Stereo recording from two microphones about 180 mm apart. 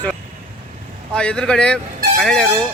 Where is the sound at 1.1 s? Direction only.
5° left (ahead or behind).